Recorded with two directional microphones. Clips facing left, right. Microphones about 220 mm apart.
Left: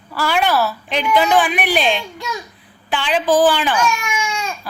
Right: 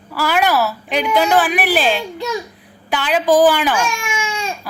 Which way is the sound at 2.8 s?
10° right (ahead or behind).